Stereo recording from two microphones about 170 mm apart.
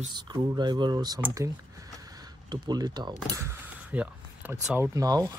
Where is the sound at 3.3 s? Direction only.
15° right (ahead or behind).